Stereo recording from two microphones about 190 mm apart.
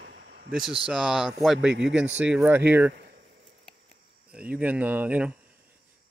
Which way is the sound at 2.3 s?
10° right (ahead or behind).